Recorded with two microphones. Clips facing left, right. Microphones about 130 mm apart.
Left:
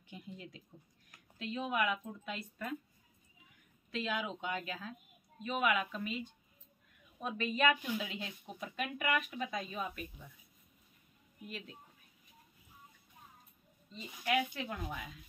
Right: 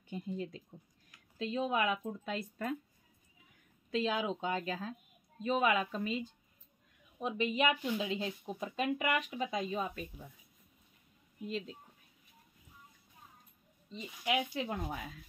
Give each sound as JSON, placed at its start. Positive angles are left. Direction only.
{"t": 0.1, "sound": "speech", "side_deg": -35}
{"t": 3.9, "sound": "speech", "side_deg": -30}
{"t": 7.2, "sound": "speech", "side_deg": -15}
{"t": 11.4, "sound": "speech", "side_deg": -25}
{"t": 13.8, "sound": "speech", "side_deg": -20}